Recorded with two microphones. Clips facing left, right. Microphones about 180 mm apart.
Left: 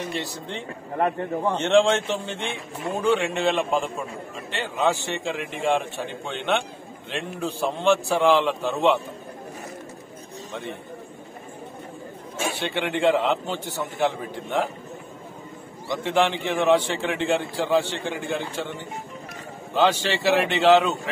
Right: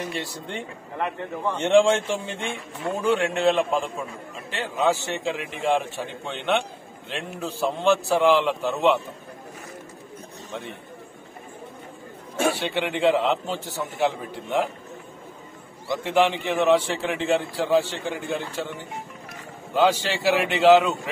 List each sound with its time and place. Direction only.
0.1 s a man's voice: 10° right (ahead or behind)
0.9 s a man's voice: 40° left (ahead or behind)
1.7 s a man's voice: 5° right (ahead or behind)
12.5 s a man's voice: 5° right (ahead or behind)
15.9 s a man's voice: 5° right (ahead or behind)